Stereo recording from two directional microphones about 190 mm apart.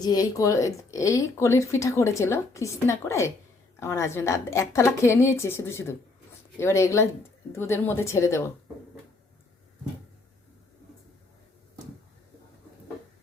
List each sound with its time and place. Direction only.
0.0 s speech: 20° left (ahead or behind)